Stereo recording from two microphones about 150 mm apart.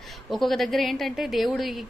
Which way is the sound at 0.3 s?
Centre (ahead or behind).